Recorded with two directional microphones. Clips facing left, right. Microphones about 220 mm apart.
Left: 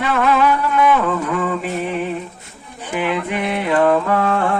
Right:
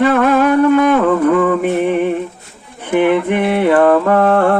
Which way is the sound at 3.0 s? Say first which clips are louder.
Right 7 dB; 55° right (ahead or behind).